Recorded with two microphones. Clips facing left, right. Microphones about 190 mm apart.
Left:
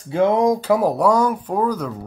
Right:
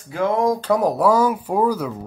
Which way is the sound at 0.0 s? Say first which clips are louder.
Left 3 dB; 25° left (ahead or behind).